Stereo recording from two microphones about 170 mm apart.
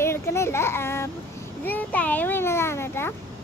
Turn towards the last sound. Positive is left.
turn(degrees=15)  # may be behind; listen again after turning